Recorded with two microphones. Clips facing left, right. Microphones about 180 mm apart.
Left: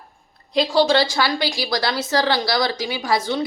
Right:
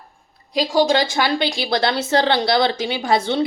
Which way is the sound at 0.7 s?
15° right (ahead or behind).